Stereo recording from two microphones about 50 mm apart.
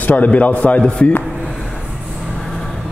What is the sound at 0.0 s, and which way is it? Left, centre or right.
Speech, left.